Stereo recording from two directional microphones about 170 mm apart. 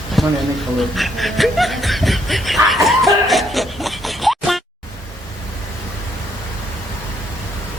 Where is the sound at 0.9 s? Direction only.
Centre (ahead or behind).